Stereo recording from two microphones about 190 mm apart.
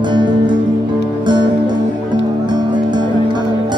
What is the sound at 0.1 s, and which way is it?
Music, 25° right (ahead or behind).